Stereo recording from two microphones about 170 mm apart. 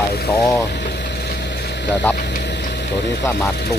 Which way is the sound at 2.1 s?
15° left (ahead or behind).